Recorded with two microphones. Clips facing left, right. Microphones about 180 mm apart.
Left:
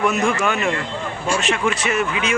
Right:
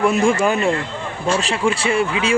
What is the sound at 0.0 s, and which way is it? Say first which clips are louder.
Speech: right 3 dB; 30° right (ahead or behind).